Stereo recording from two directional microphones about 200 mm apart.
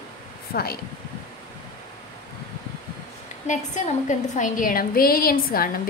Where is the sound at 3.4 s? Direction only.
35° left (ahead or behind).